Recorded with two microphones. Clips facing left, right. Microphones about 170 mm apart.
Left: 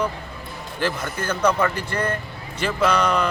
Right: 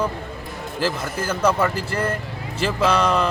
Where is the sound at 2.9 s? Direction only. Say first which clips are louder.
Right 1 dB; 30° right (ahead or behind).